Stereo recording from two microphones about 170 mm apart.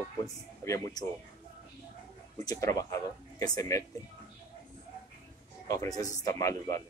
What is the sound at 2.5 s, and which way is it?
A man's voice, 20° left (ahead or behind).